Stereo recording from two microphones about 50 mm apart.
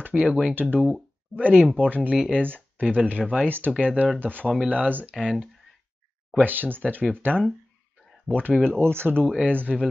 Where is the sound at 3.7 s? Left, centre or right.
Right.